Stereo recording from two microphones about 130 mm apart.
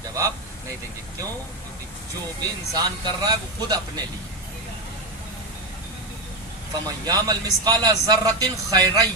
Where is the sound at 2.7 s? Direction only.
30° right (ahead or behind).